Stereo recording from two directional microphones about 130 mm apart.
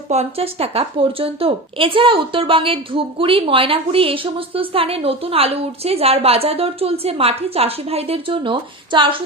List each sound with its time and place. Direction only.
0.1 s a woman's voice: 55° right (ahead or behind)